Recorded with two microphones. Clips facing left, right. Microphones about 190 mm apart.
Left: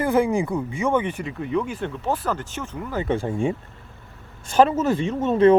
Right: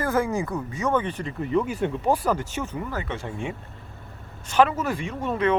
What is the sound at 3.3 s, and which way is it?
Speech, 30° left (ahead or behind).